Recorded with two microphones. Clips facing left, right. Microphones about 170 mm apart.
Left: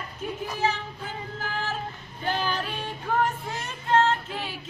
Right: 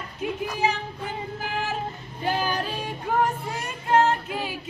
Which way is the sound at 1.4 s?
15° right (ahead or behind).